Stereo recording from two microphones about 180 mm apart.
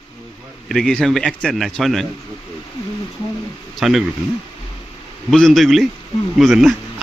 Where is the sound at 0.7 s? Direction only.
5° left (ahead or behind).